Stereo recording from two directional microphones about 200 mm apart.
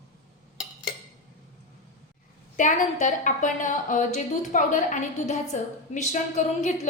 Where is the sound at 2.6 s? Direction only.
40° left (ahead or behind).